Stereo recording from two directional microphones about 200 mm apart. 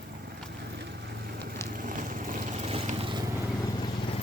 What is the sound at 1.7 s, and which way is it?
Vehicle, 40° right (ahead or behind).